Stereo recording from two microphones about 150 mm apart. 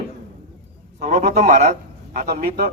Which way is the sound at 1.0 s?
50° right (ahead or behind).